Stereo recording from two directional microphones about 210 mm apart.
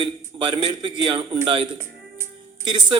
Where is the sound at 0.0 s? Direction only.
25° right (ahead or behind).